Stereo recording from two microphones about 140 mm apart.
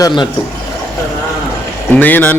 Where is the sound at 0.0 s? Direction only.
35° left (ahead or behind).